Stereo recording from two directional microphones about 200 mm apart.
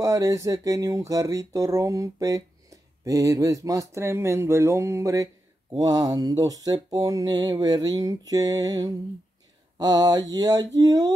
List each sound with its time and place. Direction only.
0.0 s speech: 15° right (ahead or behind)
8.3 s mantra: 20° right (ahead or behind)